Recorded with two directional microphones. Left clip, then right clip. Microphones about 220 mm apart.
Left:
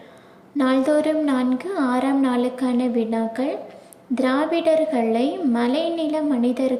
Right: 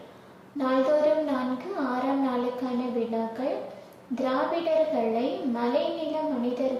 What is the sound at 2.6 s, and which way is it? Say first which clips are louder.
Speech: left 7 dB; 35° left (ahead or behind).